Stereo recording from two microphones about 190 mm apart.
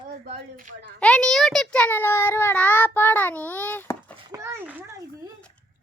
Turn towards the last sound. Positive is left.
turn(degrees=-10)  # may be behind; listen again after turning